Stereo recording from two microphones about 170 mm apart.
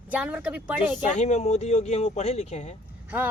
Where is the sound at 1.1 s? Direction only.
45° left (ahead or behind).